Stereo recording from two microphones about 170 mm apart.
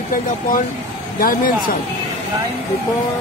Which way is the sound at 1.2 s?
55° left (ahead or behind).